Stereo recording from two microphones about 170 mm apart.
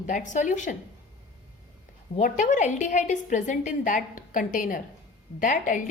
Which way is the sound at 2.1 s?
45° left (ahead or behind).